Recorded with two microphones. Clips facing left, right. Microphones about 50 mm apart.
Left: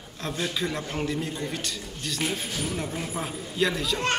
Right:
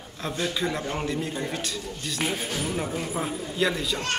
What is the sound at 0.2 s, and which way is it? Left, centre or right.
Speech, centre.